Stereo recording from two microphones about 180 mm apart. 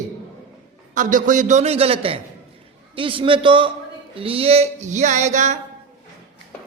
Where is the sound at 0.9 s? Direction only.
45° right (ahead or behind).